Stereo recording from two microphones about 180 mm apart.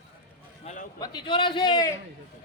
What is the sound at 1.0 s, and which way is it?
Speech, 25° left (ahead or behind).